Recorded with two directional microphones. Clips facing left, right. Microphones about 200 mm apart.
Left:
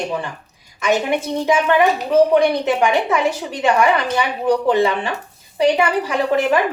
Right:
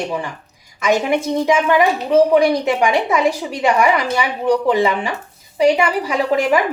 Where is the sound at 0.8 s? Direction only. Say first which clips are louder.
Right 2 dB; 10° right (ahead or behind).